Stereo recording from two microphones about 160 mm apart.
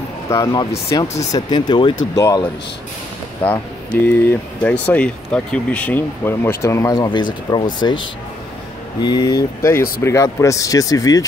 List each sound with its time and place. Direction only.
0.3 s speech: 20° left (ahead or behind)
1.0 s speech: 45° left (ahead or behind)
1.3 s speech: 30° left (ahead or behind)
3.4 s speech: 10° left (ahead or behind); by 7.6 s 30° left (ahead or behind)
9.0 s speech: 25° left (ahead or behind)